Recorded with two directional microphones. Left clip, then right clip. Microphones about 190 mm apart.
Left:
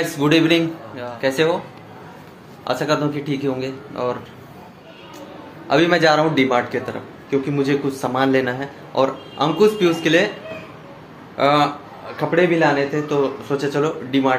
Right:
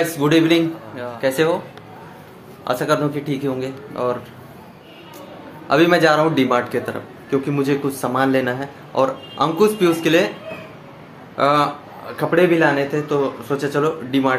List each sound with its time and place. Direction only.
0.0 s a man's voice: 5° right (ahead or behind)
2.6 s a man's voice: 10° right (ahead or behind)
5.7 s a man's voice: 10° right (ahead or behind)
11.3 s a man's voice: 15° right (ahead or behind)